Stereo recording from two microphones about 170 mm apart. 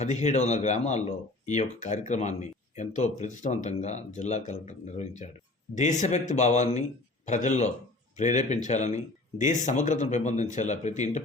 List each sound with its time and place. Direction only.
0.0 s speech: 45° left (ahead or behind)